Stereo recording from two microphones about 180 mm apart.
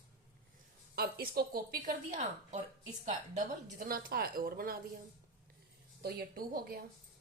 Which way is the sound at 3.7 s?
55° right (ahead or behind).